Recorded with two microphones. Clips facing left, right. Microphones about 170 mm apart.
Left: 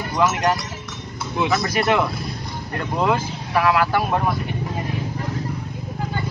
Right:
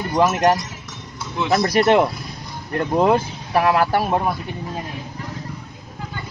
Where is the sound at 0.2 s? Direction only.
40° right (ahead or behind).